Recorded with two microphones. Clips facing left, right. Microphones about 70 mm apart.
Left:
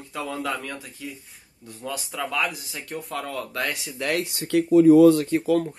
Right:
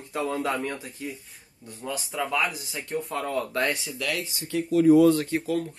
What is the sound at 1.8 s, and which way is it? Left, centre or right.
Speech, centre.